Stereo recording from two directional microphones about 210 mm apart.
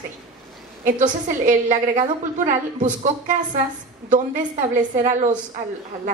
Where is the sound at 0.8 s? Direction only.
35° right (ahead or behind).